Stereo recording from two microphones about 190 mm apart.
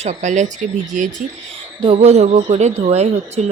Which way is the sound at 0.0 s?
40° right (ahead or behind).